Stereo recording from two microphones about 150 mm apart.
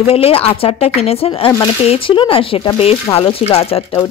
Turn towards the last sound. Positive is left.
turn(degrees=40)  # may be behind; listen again after turning